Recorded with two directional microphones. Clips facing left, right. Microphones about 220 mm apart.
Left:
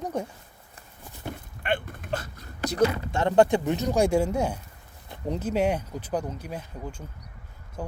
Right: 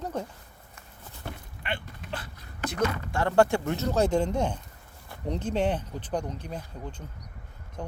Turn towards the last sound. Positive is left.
turn(degrees=5)  # may be behind; listen again after turning